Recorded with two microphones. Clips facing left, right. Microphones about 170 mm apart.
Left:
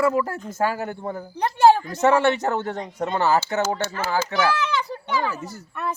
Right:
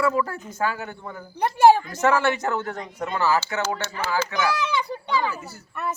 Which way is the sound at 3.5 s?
40° left (ahead or behind).